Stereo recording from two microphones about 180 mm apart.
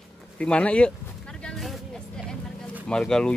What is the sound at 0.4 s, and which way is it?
Speech, 5° left (ahead or behind).